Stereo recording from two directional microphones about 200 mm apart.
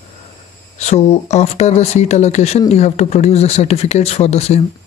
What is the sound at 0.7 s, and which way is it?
Speech, 35° left (ahead or behind).